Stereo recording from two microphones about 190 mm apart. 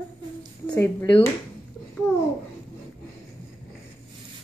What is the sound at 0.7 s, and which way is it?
Speech, 10° left (ahead or behind).